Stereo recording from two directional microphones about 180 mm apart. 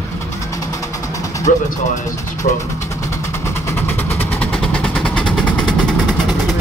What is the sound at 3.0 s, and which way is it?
Vehicle, 15° left (ahead or behind).